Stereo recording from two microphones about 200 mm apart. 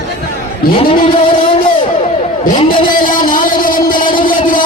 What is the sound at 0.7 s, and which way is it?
Speech, 25° left (ahead or behind).